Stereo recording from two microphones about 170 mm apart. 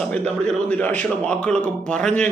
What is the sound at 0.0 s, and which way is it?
A man's voice, 5° left (ahead or behind).